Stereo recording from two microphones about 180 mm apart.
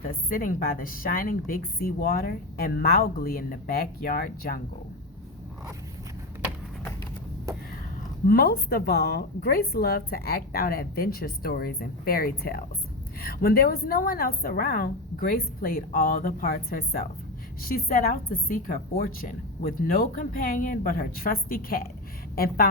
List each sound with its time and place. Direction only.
0.0 s a woman's voice: 50° left (ahead or behind)
8.3 s a woman's voice: 60° left (ahead or behind)